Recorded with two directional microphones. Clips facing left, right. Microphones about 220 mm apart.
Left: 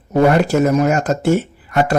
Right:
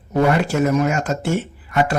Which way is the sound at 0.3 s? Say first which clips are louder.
Left 4 dB; 40° left (ahead or behind).